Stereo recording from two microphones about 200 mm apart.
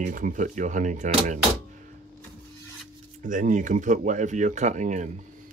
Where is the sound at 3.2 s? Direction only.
40° right (ahead or behind).